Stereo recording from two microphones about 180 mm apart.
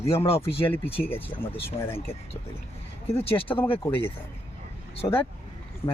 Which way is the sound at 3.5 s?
20° left (ahead or behind).